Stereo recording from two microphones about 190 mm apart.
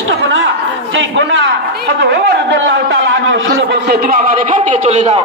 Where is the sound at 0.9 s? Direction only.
70° right (ahead or behind).